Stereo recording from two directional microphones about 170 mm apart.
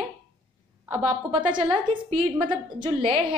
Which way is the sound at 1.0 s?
30° right (ahead or behind).